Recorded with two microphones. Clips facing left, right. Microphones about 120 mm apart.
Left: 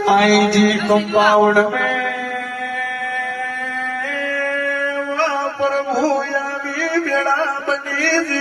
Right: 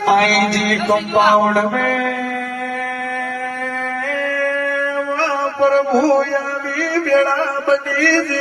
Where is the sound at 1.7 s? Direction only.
50° right (ahead or behind).